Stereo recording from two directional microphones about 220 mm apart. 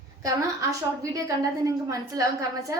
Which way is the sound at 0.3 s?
15° right (ahead or behind).